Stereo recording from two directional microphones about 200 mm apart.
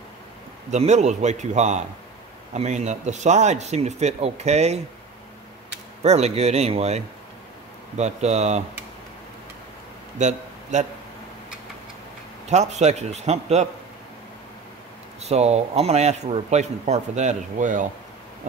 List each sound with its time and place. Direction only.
0.7 s speech: 35° right (ahead or behind)
6.0 s speech: 30° right (ahead or behind)
8.0 s speech: 35° right (ahead or behind)
10.1 s a man's voice: 35° right (ahead or behind)
12.4 s speech: 35° right (ahead or behind)
15.2 s speech: 30° right (ahead or behind)